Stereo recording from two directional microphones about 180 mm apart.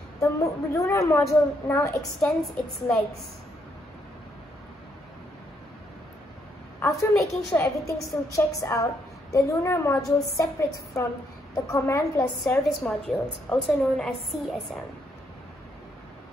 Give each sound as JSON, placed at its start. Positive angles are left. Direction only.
{"t": 0.2, "sound": "a woman's voice", "side_deg": 15}
{"t": 6.8, "sound": "a woman's voice", "side_deg": 15}
{"t": 12.6, "sound": "a woman's voice", "side_deg": 0}